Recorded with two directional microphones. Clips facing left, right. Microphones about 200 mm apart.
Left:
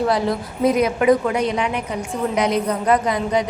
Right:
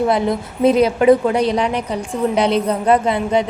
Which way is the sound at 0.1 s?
20° right (ahead or behind).